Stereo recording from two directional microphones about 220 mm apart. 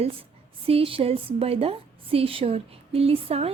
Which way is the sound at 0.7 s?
25° right (ahead or behind).